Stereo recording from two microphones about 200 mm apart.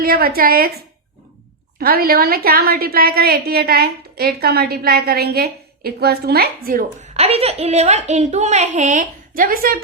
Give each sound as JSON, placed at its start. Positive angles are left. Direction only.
{"t": 0.0, "sound": "a woman's voice", "side_deg": -50}
{"t": 1.8, "sound": "a woman's voice", "side_deg": -50}